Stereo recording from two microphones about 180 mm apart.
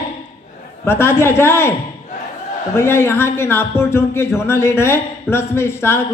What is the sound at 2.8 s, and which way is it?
A man's voice, 15° left (ahead or behind).